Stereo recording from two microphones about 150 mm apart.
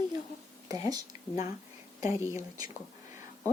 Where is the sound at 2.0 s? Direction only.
20° right (ahead or behind).